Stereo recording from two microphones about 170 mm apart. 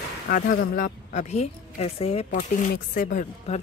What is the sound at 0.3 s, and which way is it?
A woman's voice, 55° left (ahead or behind).